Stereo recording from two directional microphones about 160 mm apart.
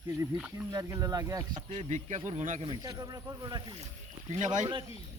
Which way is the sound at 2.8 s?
25° right (ahead or behind).